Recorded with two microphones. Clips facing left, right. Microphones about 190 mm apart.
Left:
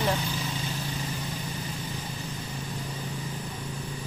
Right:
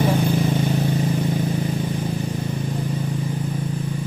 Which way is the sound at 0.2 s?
55° right (ahead or behind).